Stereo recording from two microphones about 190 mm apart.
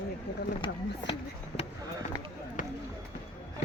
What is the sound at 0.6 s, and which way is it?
Speech, 25° left (ahead or behind).